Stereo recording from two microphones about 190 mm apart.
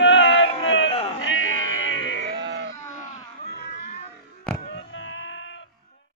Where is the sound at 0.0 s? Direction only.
70° left (ahead or behind).